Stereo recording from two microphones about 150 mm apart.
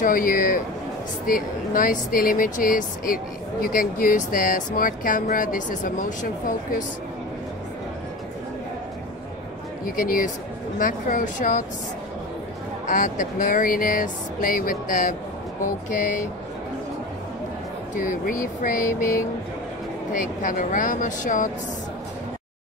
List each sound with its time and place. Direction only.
0.0 s speech: 65° left (ahead or behind)
9.9 s speech: 65° left (ahead or behind)
12.8 s speech: 60° left (ahead or behind)
18.1 s speech: 65° left (ahead or behind)